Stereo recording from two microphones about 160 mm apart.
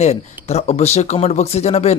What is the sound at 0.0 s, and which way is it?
A man's voice, 45° left (ahead or behind).